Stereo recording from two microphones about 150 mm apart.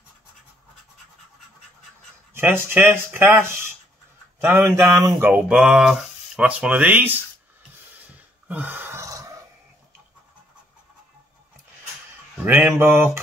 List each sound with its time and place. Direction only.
2.3 s speech: 15° right (ahead or behind)
5.5 s speech: 5° right (ahead or behind)
8.5 s gasp: 10° right (ahead or behind)
12.4 s speech: 15° right (ahead or behind)